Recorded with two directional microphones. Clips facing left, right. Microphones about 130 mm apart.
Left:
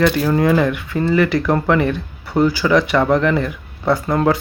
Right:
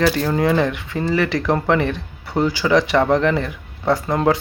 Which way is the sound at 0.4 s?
25° right (ahead or behind).